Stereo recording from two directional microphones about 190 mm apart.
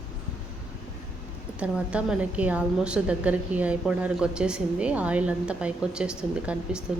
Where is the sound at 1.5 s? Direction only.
5° right (ahead or behind).